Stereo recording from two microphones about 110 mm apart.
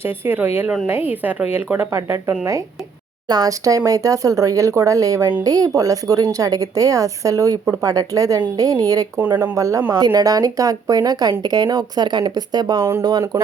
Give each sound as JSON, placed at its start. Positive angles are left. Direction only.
{"t": 0.0, "sound": "speech", "side_deg": -20}
{"t": 9.1, "sound": "speech", "side_deg": -20}
{"t": 9.6, "sound": "speech", "side_deg": -30}